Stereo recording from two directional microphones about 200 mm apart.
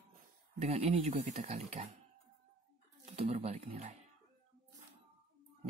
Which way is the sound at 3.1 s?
30° right (ahead or behind).